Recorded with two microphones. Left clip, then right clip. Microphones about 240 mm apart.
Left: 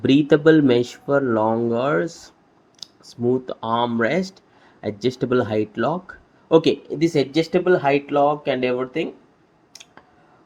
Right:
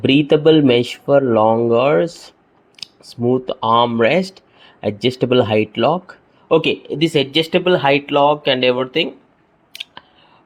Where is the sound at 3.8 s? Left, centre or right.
Centre.